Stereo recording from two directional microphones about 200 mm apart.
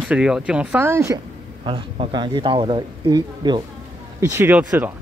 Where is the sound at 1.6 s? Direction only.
25° right (ahead or behind); by 4.9 s 10° right (ahead or behind).